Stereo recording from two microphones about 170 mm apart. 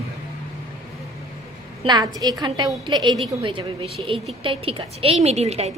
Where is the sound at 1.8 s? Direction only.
25° right (ahead or behind).